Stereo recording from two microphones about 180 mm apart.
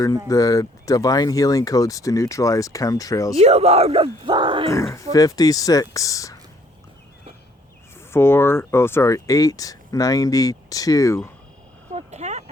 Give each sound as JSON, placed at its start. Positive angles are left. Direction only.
{"t": 0.3, "sound": "speech", "side_deg": 20}
{"t": 3.3, "sound": "speech", "side_deg": -35}
{"t": 5.1, "sound": "speech", "side_deg": 20}
{"t": 8.1, "sound": "speech", "side_deg": 15}
{"t": 11.9, "sound": "a sound", "side_deg": -40}